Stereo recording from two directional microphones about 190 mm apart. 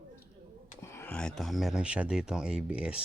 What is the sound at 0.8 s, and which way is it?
Speech, 15° left (ahead or behind).